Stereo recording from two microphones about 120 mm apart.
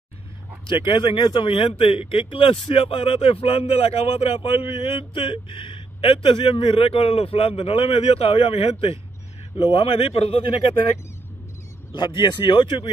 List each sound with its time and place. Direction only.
0.7 s speech: 45° left (ahead or behind)
11.9 s speech: 40° left (ahead or behind)